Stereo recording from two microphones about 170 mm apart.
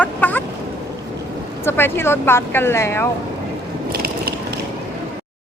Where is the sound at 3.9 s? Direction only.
65° right (ahead or behind).